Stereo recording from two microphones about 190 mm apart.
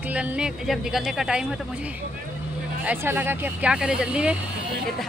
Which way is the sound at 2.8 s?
10° right (ahead or behind).